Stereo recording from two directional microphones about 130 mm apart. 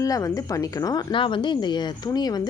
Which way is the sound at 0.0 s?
25° left (ahead or behind).